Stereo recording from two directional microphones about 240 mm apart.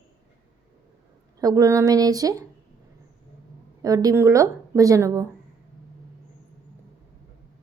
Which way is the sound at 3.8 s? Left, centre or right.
Centre.